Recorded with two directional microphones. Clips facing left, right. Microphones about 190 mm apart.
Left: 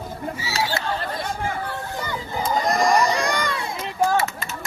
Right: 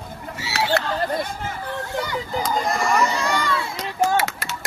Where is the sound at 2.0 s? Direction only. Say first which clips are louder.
Right 2 dB; 80° right.